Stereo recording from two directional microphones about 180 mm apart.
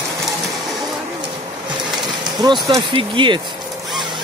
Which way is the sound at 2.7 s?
25° right (ahead or behind).